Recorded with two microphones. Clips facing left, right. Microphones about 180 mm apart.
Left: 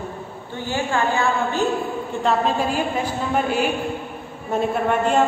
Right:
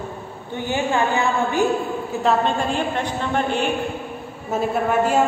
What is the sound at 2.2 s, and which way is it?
A woman's voice, 5° left (ahead or behind).